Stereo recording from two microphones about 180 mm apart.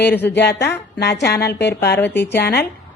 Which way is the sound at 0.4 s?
70° left (ahead or behind).